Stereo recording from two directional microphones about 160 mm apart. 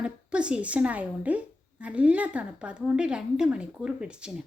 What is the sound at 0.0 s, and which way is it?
A woman's voice, 5° right (ahead or behind).